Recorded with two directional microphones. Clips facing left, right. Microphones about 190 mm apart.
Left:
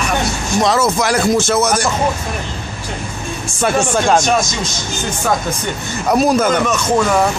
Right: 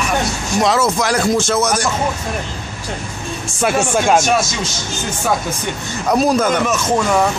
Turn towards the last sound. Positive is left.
turn(degrees=0)  # may be behind; listen again after turning